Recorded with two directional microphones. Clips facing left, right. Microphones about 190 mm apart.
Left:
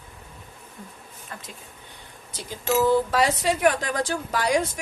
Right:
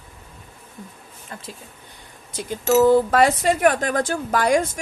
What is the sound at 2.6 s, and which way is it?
Speech, 50° right (ahead or behind).